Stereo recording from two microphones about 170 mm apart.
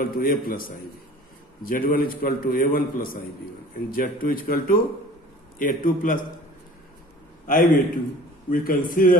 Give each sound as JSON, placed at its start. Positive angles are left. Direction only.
{"t": 0.0, "sound": "a man's voice", "side_deg": 60}
{"t": 7.4, "sound": "a man's voice", "side_deg": 50}